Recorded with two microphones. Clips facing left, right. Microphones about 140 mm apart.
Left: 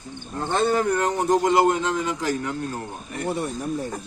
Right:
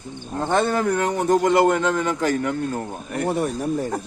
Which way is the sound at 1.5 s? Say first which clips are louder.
Right 2 dB; 55° right (ahead or behind).